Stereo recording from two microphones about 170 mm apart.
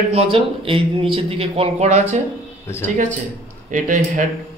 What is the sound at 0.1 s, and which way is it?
Speech, 35° right (ahead or behind).